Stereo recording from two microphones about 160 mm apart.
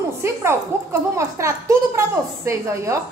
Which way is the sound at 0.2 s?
15° right (ahead or behind).